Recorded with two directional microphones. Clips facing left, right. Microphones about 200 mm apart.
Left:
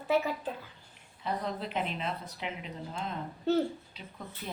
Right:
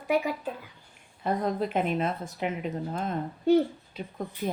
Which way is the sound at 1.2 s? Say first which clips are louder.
Right 7 dB; 50° right (ahead or behind).